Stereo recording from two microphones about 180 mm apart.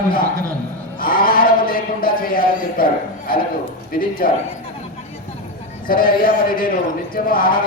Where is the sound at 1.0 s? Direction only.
55° left (ahead or behind).